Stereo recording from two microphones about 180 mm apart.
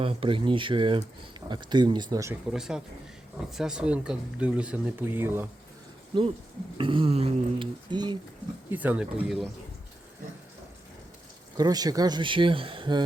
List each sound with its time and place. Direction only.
0.0 s speech: 30° right (ahead or behind)
2.5 s speech: 5° right (ahead or behind)
6.1 s speech: 30° right (ahead or behind)
8.7 s speech: 10° right (ahead or behind)
11.5 s speech: 20° right (ahead or behind)